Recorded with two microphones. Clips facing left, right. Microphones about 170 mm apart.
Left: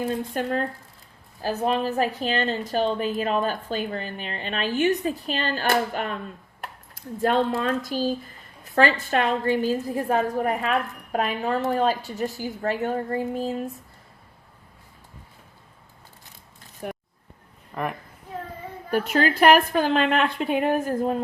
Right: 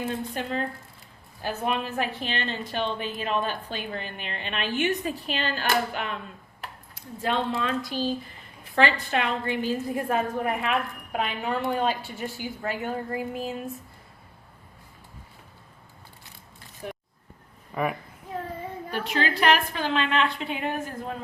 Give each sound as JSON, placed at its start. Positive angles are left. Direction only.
{"t": 0.4, "sound": "a woman's voice", "side_deg": 45}
{"t": 1.4, "sound": "a woman's voice", "side_deg": 35}
{"t": 17.7, "sound": "a woman's voice", "side_deg": -5}
{"t": 19.1, "sound": "a woman's voice", "side_deg": 45}